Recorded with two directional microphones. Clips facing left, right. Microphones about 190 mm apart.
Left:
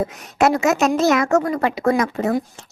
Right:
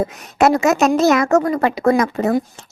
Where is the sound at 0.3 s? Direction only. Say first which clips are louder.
Right 2 dB; 40° right (ahead or behind).